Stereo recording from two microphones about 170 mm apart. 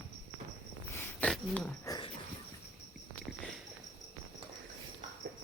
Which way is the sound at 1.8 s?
20° left (ahead or behind).